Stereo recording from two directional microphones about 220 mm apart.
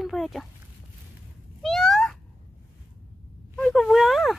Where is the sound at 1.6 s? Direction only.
Centre (ahead or behind).